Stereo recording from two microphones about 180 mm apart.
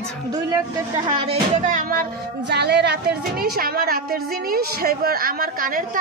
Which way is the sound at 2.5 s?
65° right (ahead or behind).